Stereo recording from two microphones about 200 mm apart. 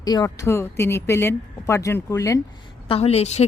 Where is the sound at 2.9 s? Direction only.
30° left (ahead or behind).